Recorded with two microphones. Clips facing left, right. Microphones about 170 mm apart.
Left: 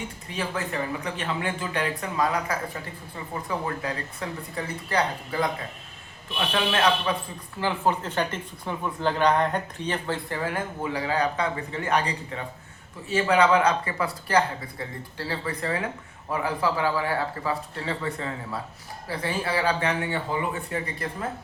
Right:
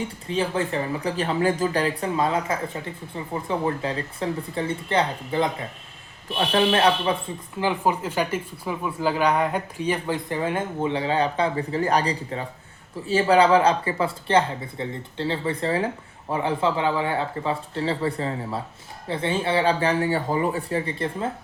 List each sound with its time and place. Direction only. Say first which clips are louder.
0.3 s speech: right 6 dB; 30° right (ahead or behind)
3.8 s speech: right 4 dB; 30° right (ahead or behind)
6.3 s speech: right 5 dB; 35° right (ahead or behind)
7.6 s speech: right 2 dB; 10° right (ahead or behind); by 21.2 s 30° right (ahead or behind)